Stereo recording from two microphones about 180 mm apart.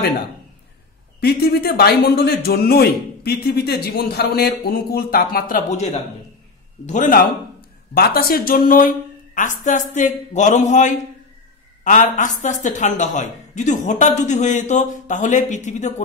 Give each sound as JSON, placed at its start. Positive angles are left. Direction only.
{"t": 1.2, "sound": "a man's voice", "side_deg": 60}
{"t": 7.9, "sound": "a woman's voice", "side_deg": 55}
{"t": 12.2, "sound": "a woman's voice", "side_deg": 45}